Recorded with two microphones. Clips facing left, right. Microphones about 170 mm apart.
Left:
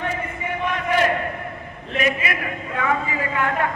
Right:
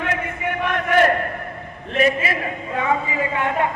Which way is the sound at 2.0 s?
30° right (ahead or behind).